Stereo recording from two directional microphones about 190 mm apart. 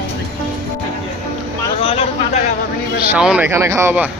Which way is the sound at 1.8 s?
30° left (ahead or behind).